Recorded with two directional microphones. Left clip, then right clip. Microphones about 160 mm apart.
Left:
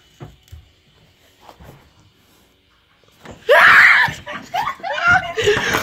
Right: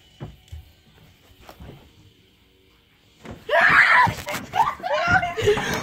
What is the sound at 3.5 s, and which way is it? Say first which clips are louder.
Screaming: left 7 dB; 50° left (ahead or behind).